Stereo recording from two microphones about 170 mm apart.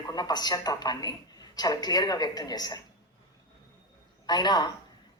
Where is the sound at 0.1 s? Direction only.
25° left (ahead or behind).